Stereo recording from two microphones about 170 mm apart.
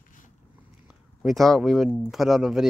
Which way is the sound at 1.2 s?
Centre (ahead or behind).